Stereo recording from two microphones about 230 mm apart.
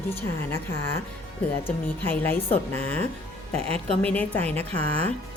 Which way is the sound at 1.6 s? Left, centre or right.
Centre.